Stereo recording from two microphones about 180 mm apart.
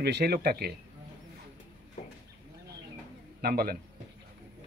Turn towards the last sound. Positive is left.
turn(degrees=-60)  # may be behind; listen again after turning